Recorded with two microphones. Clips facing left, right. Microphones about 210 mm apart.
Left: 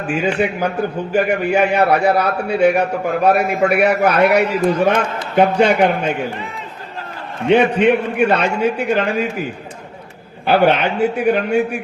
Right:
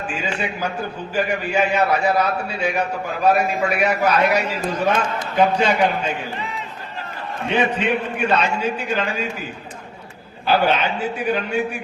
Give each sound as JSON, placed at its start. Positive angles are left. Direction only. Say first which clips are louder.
{"t": 0.1, "sound": "a man's voice", "louder": "left 11 dB", "side_deg": 60}
{"t": 7.5, "sound": "a man's voice", "louder": "left 8 dB", "side_deg": 60}
{"t": 10.4, "sound": "a man's voice", "louder": "left 5 dB", "side_deg": 60}